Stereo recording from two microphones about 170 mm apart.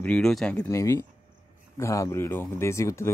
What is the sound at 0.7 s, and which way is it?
A man's voice, 15° left (ahead or behind).